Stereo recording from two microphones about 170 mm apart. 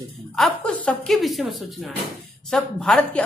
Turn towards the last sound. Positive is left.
turn(degrees=5)  # may be behind; listen again after turning